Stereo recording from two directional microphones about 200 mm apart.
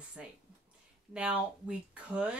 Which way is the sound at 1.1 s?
5° right (ahead or behind).